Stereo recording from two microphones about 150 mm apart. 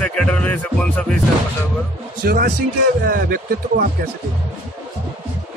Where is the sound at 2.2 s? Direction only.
90° right.